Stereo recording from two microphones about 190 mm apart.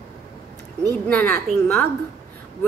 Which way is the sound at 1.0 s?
10° left (ahead or behind).